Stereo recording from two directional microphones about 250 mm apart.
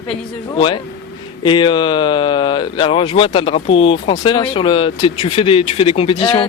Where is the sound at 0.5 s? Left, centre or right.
Centre.